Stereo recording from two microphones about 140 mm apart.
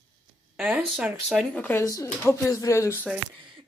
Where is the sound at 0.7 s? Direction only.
5° right (ahead or behind).